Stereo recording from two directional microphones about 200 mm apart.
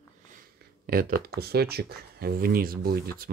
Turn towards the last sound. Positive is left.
turn(degrees=-50)  # may be behind; listen again after turning